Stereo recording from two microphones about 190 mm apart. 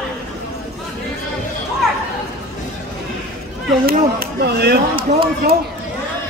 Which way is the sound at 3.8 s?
55° right (ahead or behind).